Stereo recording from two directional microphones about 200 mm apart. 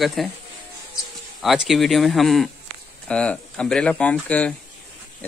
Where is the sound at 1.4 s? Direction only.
Centre (ahead or behind).